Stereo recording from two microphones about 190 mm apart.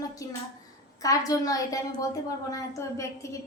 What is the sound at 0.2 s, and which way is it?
A woman's voice, 15° left (ahead or behind).